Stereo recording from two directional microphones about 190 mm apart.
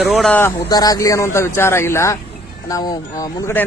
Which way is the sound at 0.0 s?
Centre (ahead or behind).